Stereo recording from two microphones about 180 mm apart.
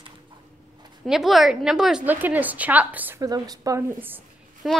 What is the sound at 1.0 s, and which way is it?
A woman's voice, centre (ahead or behind).